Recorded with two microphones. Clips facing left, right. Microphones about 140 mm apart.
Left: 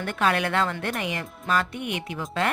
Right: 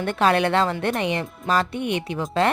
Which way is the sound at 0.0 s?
30° right (ahead or behind).